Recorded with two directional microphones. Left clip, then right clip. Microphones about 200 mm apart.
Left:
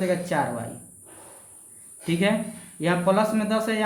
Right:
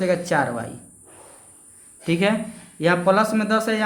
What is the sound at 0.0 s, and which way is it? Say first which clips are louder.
Speech: right 4 dB; 30° right (ahead or behind).